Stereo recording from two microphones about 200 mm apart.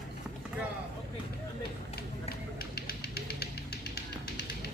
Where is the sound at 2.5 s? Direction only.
50° left (ahead or behind).